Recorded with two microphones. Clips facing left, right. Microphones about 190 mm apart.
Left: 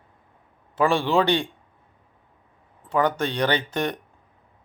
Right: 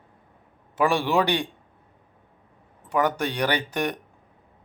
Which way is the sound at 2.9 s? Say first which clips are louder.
Left 1 dB; 15° right (ahead or behind).